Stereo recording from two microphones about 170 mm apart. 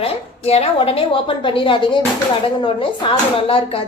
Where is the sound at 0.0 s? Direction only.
35° left (ahead or behind).